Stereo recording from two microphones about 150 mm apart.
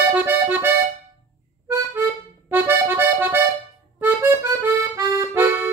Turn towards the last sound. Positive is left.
turn(degrees=-15)  # may be behind; listen again after turning